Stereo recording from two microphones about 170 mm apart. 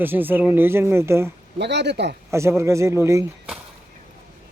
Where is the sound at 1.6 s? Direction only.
90° right.